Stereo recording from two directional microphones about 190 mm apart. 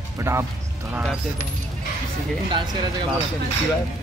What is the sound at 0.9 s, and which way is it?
Speech, 5° right (ahead or behind).